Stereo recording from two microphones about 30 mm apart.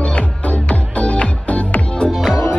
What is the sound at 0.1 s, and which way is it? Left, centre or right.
Music, left.